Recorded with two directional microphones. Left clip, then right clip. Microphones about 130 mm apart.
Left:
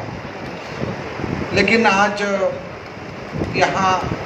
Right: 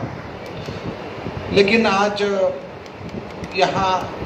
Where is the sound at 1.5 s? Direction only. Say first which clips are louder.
Even; 40° left (ahead or behind).